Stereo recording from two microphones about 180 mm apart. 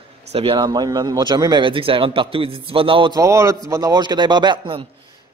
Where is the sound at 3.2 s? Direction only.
15° right (ahead or behind).